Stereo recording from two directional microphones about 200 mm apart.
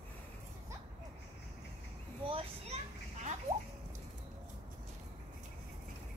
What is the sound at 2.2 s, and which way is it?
Children playing, 30° right (ahead or behind).